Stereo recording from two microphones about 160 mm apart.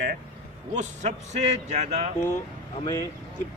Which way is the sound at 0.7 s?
45° right (ahead or behind).